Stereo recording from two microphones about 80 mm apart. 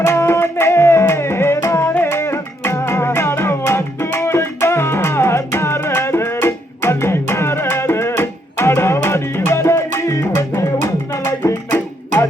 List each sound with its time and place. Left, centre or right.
0.0 s music: left